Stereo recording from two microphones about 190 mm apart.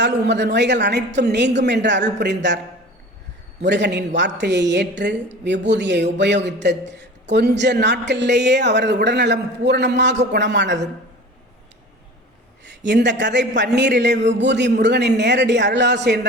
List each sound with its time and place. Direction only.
0.0 s a man's voice: 65° right (ahead or behind)
3.6 s a woman's voice: 65° right (ahead or behind)
12.6 s a man's voice: 65° right (ahead or behind)